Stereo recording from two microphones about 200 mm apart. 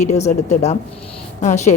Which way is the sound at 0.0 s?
35° left (ahead or behind).